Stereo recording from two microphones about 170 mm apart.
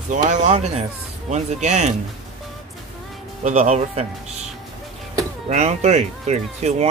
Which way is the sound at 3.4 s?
45° right (ahead or behind).